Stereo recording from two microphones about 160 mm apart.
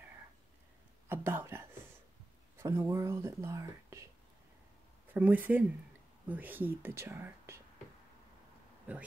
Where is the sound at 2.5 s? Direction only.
20° right (ahead or behind).